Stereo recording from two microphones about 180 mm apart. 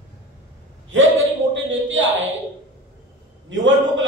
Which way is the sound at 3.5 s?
90° right.